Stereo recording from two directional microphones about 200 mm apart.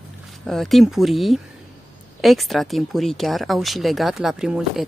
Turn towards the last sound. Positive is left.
turn(degrees=0)  # may be behind; listen again after turning